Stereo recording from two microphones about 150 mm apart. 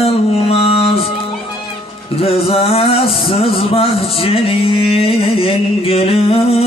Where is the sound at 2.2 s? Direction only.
40° left (ahead or behind).